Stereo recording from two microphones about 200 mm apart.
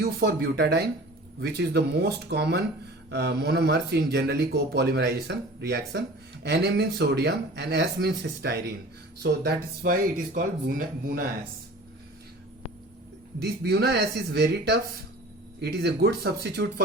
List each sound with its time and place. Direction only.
0.0 s speech: 50° right (ahead or behind)
13.4 s speech: 55° right (ahead or behind)